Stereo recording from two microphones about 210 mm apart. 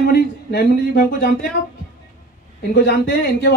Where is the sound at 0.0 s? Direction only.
50° left (ahead or behind).